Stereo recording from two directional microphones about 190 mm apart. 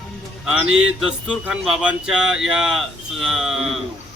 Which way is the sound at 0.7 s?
Centre (ahead or behind).